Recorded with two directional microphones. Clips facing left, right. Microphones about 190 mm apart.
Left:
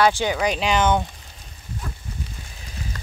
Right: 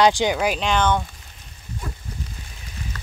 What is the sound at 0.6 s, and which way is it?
Speech, 5° left (ahead or behind).